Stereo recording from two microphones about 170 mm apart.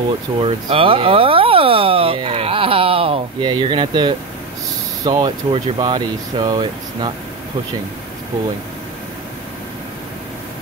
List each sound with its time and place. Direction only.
0.4 s speech: 35° right (ahead or behind)